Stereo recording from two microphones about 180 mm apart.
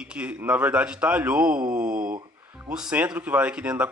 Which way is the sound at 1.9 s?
50° right (ahead or behind).